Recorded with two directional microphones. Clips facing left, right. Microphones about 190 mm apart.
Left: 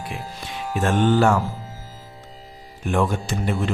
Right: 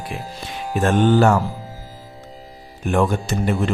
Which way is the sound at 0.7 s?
40° right (ahead or behind).